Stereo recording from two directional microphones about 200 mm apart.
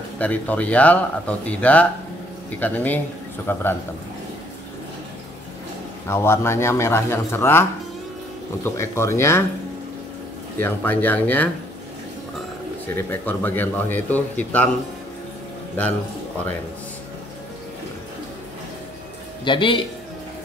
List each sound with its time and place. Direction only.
0.2 s speech: 10° left (ahead or behind)
6.0 s speech: 15° left (ahead or behind)
8.6 s speech: 15° left (ahead or behind)
10.6 s speech: 10° left (ahead or behind)
12.9 s speech: 10° left (ahead or behind)
19.4 s a man's voice: 25° left (ahead or behind)